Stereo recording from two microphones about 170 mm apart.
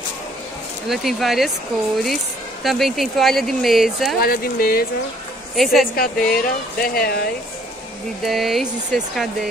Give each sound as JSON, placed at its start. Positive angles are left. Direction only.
{"t": 0.8, "sound": "speech", "side_deg": 0}
{"t": 2.6, "sound": "speech", "side_deg": 0}
{"t": 4.2, "sound": "speech", "side_deg": 60}
{"t": 5.6, "sound": "speech", "side_deg": 0}
{"t": 5.9, "sound": "speech", "side_deg": 55}
{"t": 8.2, "sound": "speech", "side_deg": 0}